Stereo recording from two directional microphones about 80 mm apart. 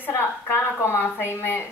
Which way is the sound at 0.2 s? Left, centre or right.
Left.